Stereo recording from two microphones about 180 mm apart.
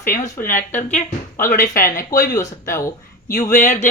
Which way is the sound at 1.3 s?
15° left (ahead or behind).